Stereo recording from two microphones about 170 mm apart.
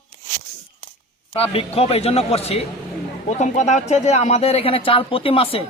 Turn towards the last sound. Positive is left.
turn(degrees=35)  # may be behind; listen again after turning